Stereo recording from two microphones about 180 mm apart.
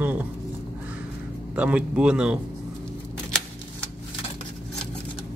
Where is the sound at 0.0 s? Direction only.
10° right (ahead or behind).